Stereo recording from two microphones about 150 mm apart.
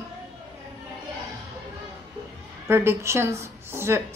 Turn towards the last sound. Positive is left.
turn(degrees=-15)  # may be behind; listen again after turning